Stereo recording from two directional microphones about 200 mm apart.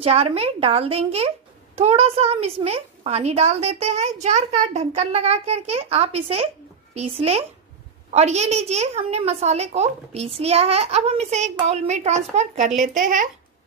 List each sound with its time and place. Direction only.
0.0 s a woman's voice: 30° right (ahead or behind)